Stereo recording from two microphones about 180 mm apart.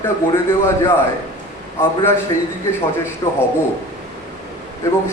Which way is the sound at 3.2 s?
25° left (ahead or behind).